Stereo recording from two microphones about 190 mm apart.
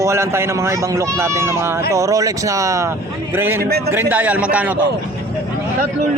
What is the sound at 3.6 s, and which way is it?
Speech, 55° right (ahead or behind).